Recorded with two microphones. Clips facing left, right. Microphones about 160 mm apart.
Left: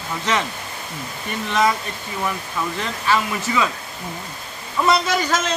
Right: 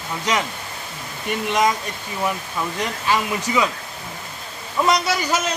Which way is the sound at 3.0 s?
15° right (ahead or behind).